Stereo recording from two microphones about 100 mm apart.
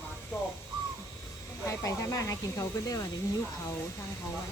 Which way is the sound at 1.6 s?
30° left (ahead or behind).